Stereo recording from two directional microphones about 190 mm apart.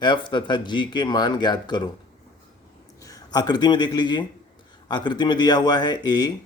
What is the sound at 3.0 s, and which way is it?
Speech, 20° left (ahead or behind).